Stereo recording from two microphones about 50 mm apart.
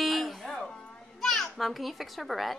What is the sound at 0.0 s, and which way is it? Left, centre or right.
Music, centre.